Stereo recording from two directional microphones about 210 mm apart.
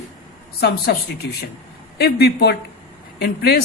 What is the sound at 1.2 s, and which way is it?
A woman's voice, 55° left (ahead or behind).